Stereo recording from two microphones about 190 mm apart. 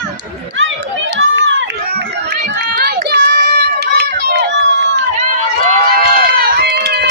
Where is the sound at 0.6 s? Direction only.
70° right (ahead or behind).